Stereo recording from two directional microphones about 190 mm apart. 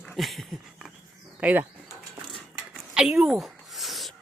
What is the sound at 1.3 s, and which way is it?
Speech, 5° right (ahead or behind).